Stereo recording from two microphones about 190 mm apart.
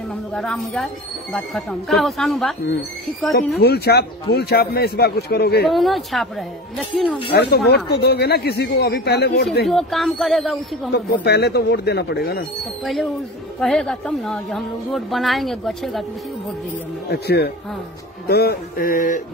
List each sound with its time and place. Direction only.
0.3 s a woman's voice: 5° left (ahead or behind)
3.3 s speech: 60° left (ahead or behind)
5.7 s a woman's voice: centre (ahead or behind)
7.3 s speech: 55° left (ahead or behind)
9.7 s a woman's voice: centre (ahead or behind)
11.2 s speech: 60° left (ahead or behind)
13.6 s a woman's voice: 5° left (ahead or behind)
17.1 s speech: 60° left (ahead or behind)